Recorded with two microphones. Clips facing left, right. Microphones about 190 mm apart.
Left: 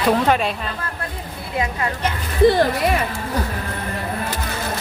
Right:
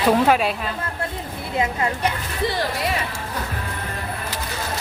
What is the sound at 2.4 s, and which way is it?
Speech, 50° left (ahead or behind).